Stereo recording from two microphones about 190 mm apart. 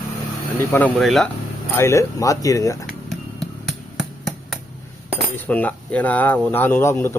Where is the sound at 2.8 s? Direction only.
Centre (ahead or behind).